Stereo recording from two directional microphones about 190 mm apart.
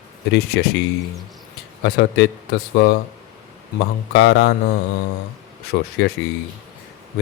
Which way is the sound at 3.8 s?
70° left (ahead or behind).